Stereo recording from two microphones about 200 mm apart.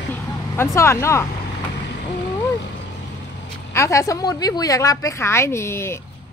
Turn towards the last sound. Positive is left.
turn(degrees=15)  # may be behind; listen again after turning